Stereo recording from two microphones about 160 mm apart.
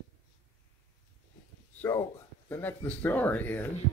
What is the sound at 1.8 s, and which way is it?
Speech, 15° left (ahead or behind).